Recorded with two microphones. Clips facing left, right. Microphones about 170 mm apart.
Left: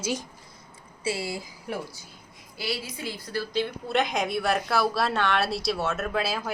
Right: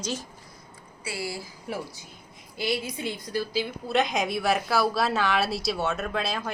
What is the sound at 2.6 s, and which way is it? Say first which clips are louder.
Speech: right 4 dB; 20° right (ahead or behind).